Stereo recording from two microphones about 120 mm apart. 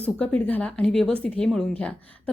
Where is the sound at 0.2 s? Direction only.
10° left (ahead or behind).